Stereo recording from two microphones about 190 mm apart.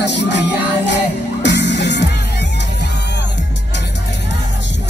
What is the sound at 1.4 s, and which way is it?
Music, 65° left (ahead or behind).